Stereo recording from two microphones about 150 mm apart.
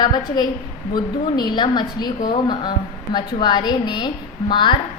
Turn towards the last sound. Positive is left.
turn(degrees=30)  # may be behind; listen again after turning